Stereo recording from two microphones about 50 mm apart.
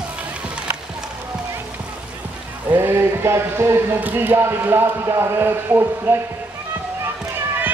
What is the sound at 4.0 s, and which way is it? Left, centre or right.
Speech, right.